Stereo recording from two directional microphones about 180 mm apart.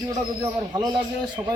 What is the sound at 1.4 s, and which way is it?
Speech, 10° right (ahead or behind).